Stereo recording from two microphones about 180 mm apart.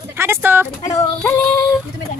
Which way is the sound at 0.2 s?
15° right (ahead or behind).